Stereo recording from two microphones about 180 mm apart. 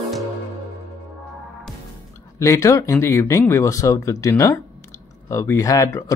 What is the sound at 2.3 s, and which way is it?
Speech, 15° left (ahead or behind).